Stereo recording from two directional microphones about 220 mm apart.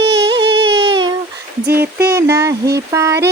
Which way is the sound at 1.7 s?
10° right (ahead or behind).